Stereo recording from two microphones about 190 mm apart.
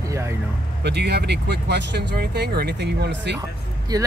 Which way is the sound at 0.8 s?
60° right (ahead or behind).